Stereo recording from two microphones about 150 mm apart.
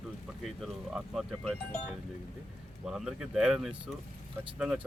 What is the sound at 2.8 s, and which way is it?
Speech, 5° right (ahead or behind).